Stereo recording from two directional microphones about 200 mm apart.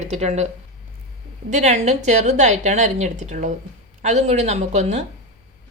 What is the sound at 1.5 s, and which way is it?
A woman's voice, 35° right (ahead or behind).